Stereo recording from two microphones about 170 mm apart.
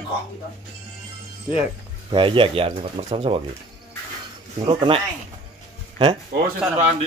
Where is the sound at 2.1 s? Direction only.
30° right (ahead or behind).